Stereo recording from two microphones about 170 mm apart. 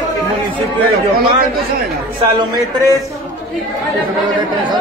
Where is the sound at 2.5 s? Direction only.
20° right (ahead or behind).